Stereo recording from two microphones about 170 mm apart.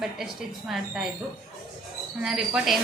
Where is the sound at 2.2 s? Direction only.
Centre (ahead or behind).